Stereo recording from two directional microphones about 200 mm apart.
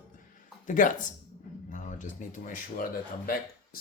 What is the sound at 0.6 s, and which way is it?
Speech, 40° left (ahead or behind).